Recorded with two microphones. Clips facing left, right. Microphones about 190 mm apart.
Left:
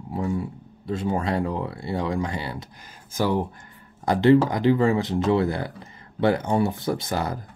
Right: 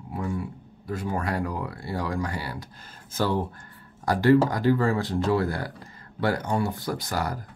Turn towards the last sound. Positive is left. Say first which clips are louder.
# left 3 dB
turn(degrees=20)  # may be behind; listen again after turning